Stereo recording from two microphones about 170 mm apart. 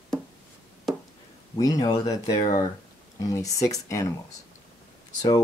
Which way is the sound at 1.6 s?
20° left (ahead or behind).